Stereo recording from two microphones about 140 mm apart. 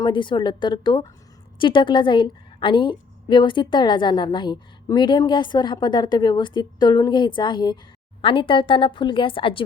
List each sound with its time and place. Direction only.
0.0 s a woman's voice: 35° left (ahead or behind)